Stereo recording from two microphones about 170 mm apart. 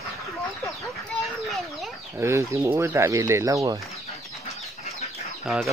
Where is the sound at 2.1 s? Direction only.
15° right (ahead or behind).